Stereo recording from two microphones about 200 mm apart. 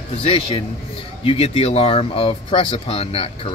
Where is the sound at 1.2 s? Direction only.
30° left (ahead or behind).